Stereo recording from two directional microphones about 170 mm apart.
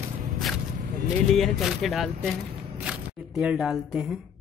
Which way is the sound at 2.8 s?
5° right (ahead or behind).